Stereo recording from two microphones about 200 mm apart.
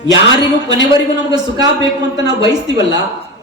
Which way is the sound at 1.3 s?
20° right (ahead or behind).